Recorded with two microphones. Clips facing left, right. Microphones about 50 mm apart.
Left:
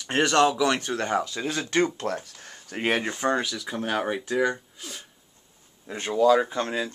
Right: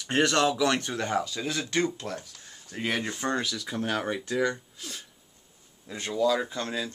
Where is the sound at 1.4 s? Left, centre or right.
Left.